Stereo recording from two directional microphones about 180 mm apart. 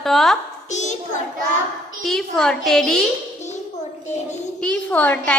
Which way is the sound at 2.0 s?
Centre (ahead or behind).